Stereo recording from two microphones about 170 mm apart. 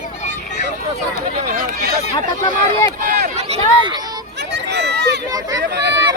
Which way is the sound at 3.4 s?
40° right (ahead or behind).